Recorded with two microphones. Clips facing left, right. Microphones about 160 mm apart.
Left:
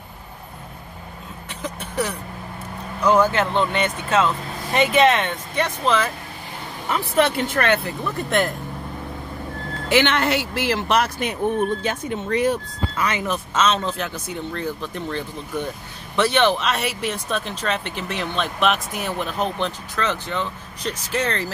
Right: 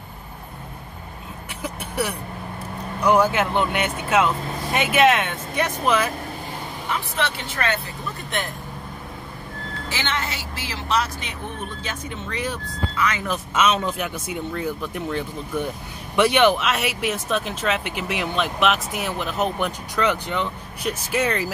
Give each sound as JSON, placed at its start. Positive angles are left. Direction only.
{"t": 1.6, "sound": "a sound", "side_deg": -10}
{"t": 3.0, "sound": "speech", "side_deg": -15}
{"t": 7.2, "sound": "speech", "side_deg": 50}
{"t": 9.8, "sound": "speech", "side_deg": 65}
{"t": 13.6, "sound": "speech", "side_deg": -10}